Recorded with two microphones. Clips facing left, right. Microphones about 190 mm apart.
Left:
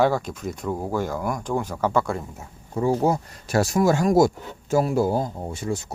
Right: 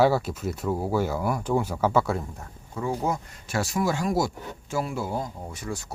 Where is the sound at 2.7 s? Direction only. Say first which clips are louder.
Left 7 dB; 30° left (ahead or behind).